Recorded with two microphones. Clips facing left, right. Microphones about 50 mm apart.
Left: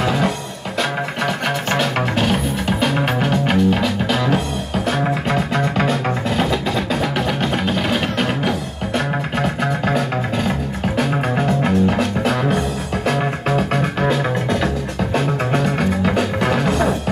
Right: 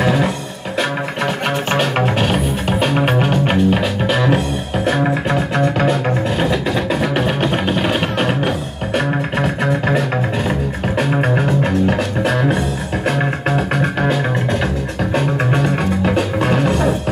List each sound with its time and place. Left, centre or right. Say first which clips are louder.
1.7 s music: right 3 dB; right
6.9 s music: right 2 dB; right